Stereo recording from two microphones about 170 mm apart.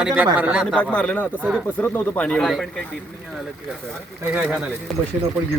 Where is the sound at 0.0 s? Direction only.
5° right (ahead or behind).